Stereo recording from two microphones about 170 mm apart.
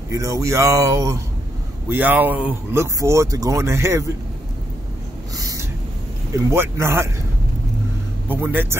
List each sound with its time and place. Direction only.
0.1 s speech: 20° right (ahead or behind)
5.4 s a sound: 20° right (ahead or behind)
6.3 s speech: 15° right (ahead or behind)
8.3 s speech: 10° right (ahead or behind)